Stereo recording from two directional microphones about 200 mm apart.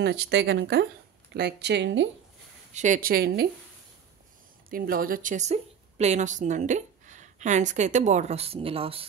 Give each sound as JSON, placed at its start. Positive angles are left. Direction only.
{"t": 0.0, "sound": "speech", "side_deg": -60}
{"t": 2.7, "sound": "speech", "side_deg": -40}
{"t": 4.6, "sound": "a woman's voice", "side_deg": -45}